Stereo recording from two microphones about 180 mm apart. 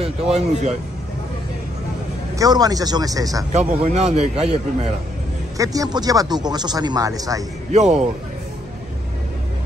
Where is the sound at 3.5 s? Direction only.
40° right (ahead or behind).